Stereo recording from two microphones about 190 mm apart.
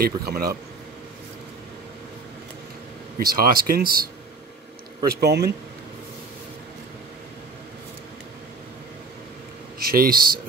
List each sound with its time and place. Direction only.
0.0 s speech: 55° right (ahead or behind)
3.2 s speech: 50° right (ahead or behind)
5.2 s a man's voice: 60° right (ahead or behind)
9.8 s speech: 50° right (ahead or behind)